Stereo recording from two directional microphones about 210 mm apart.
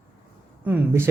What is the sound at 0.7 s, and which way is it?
Speech, 10° right (ahead or behind).